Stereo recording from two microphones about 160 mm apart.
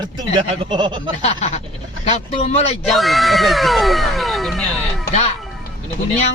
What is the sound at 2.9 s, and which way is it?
Speech, centre (ahead or behind).